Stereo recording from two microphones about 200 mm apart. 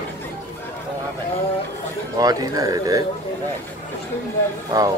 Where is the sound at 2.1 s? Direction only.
20° right (ahead or behind).